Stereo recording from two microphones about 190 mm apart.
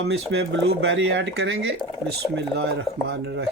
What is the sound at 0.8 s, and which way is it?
Speech, 75° right (ahead or behind).